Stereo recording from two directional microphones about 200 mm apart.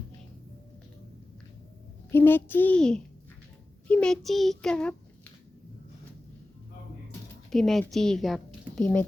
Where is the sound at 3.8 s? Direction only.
5° left (ahead or behind).